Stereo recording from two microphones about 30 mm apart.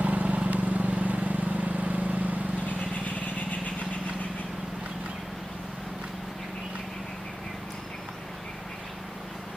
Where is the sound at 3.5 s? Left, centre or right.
Left.